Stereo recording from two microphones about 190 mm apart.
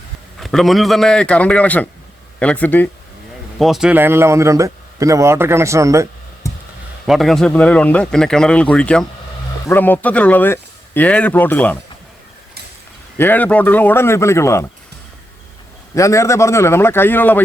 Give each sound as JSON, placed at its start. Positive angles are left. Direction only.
{"t": 0.3, "sound": "speech", "side_deg": 0}
{"t": 3.6, "sound": "speech", "side_deg": 0}
{"t": 6.4, "sound": "a sound", "side_deg": 15}
{"t": 7.1, "sound": "speech", "side_deg": 0}
{"t": 13.1, "sound": "speech", "side_deg": 10}
{"t": 16.0, "sound": "speech", "side_deg": 15}